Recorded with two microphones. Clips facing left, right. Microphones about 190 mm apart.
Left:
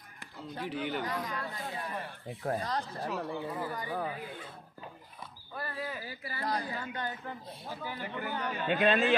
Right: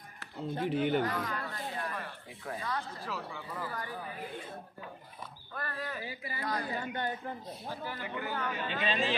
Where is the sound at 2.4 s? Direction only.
40° left (ahead or behind).